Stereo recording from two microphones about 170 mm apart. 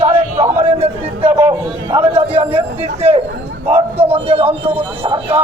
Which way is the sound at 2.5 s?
40° right (ahead or behind).